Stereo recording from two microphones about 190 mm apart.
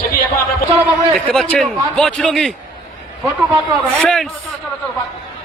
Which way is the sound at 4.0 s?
5° left (ahead or behind).